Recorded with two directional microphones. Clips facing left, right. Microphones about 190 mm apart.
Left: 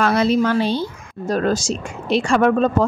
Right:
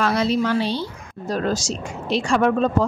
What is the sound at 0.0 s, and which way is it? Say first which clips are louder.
A woman's voice: left 3 dB; 55° left (ahead or behind).